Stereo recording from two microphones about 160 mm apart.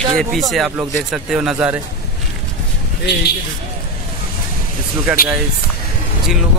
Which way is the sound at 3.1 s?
90° left.